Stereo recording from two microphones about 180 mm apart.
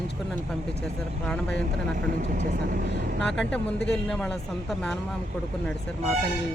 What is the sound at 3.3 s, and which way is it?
Speech, 5° left (ahead or behind).